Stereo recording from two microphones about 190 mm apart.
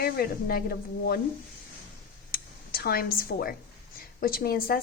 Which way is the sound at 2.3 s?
50° left (ahead or behind).